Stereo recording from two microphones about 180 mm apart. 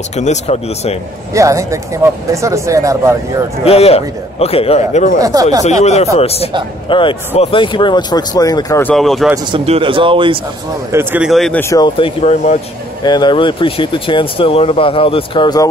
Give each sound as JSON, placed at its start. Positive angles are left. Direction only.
{"t": 0.1, "sound": "a man's voice", "side_deg": 40}
{"t": 1.3, "sound": "speech", "side_deg": -15}
{"t": 3.6, "sound": "a man's voice", "side_deg": 35}
{"t": 5.2, "sound": "a man's voice", "side_deg": -20}
{"t": 5.6, "sound": "a man's voice", "side_deg": 40}
{"t": 8.9, "sound": "a man's voice", "side_deg": 0}
{"t": 9.5, "sound": "a man's voice", "side_deg": -30}
{"t": 10.9, "sound": "a man's voice", "side_deg": -10}
{"t": 11.7, "sound": "a man's voice", "side_deg": 25}
{"t": 13.0, "sound": "speech", "side_deg": 25}